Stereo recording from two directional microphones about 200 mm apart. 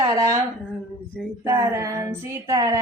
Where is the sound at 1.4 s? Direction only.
15° right (ahead or behind).